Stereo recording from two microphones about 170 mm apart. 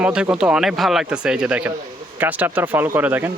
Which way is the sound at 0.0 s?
5° right (ahead or behind).